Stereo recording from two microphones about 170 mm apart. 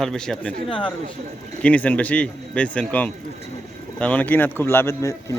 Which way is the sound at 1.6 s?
10° left (ahead or behind).